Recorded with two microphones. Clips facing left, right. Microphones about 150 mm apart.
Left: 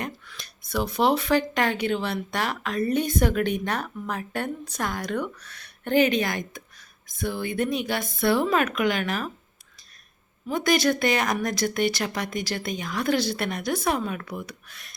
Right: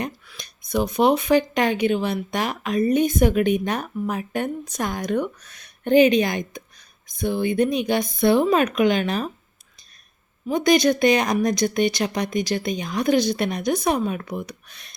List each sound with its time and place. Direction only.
0.0 s speech: 15° right (ahead or behind)
10.5 s speech: 20° right (ahead or behind)